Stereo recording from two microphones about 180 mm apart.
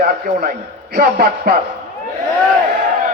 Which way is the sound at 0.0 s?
55° right (ahead or behind).